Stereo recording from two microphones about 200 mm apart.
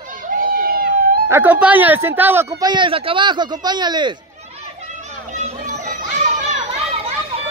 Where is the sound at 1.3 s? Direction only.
10° right (ahead or behind).